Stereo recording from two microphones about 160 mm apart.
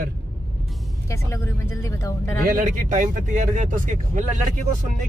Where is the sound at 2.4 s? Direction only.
55° right (ahead or behind).